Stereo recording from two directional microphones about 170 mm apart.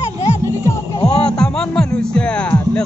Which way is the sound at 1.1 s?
5° left (ahead or behind).